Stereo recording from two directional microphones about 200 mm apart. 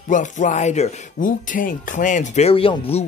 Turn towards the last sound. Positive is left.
turn(degrees=30)  # may be behind; listen again after turning